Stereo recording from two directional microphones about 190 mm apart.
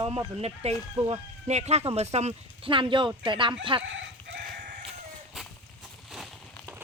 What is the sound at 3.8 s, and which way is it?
Chicken, 70° right (ahead or behind).